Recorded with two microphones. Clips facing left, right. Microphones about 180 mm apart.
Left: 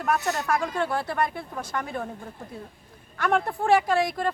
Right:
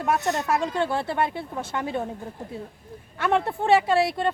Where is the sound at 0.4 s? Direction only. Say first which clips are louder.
Right 2 dB; 25° right (ahead or behind).